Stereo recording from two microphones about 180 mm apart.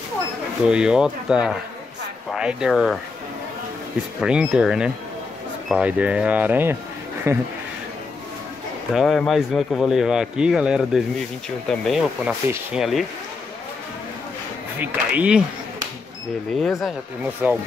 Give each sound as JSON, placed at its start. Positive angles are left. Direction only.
{"t": 0.7, "sound": "speech", "side_deg": -5}
{"t": 4.2, "sound": "speech", "side_deg": -5}
{"t": 8.9, "sound": "speech", "side_deg": 0}
{"t": 14.8, "sound": "speech", "side_deg": -5}
{"t": 17.4, "sound": "speech", "side_deg": -10}